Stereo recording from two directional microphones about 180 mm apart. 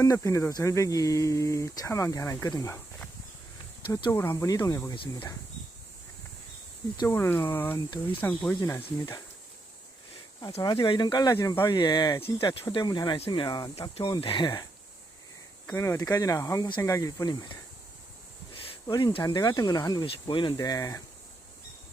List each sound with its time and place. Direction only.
0.0 s speech: 20° left (ahead or behind)
3.8 s speech: 20° left (ahead or behind)
6.9 s speech: 20° left (ahead or behind)
10.6 s speech: 25° left (ahead or behind)
15.6 s speech: 15° left (ahead or behind)
18.5 s speech: 30° left (ahead or behind)